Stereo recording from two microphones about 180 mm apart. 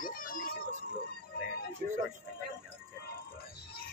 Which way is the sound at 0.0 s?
50° left (ahead or behind).